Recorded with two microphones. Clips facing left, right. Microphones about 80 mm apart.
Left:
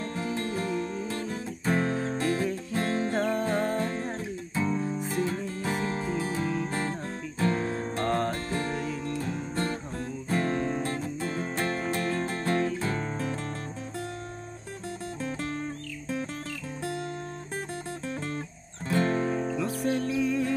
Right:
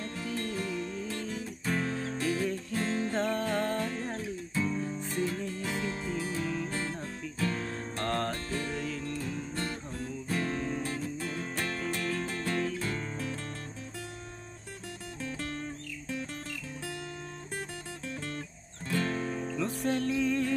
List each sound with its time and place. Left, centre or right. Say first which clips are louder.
0.0 s music: left 4 dB; left
2.7 s music: left 3 dB; left
3.1 s music: left 3 dB; centre
4.8 s music: left 5 dB; centre
5.6 s music: left 4 dB; left
6.7 s music: left 4 dB; left
7.7 s music: left 5 dB; centre
8.5 s music: left 4 dB; left
8.7 s music: left 3 dB; centre
9.3 s music: left 5 dB; left
18.0 s guitar: left 4 dB; left
18.9 s music: left 6 dB; left
19.8 s music: left 1 dB; centre